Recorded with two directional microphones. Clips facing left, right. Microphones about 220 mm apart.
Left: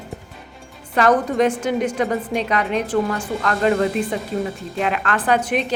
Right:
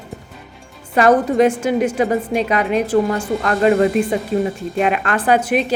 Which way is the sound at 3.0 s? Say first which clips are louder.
Right 4 dB; 20° right (ahead or behind).